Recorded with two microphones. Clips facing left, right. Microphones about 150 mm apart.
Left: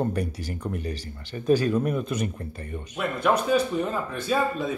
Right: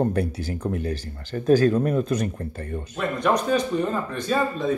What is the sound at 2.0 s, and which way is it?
Speech, 45° right (ahead or behind).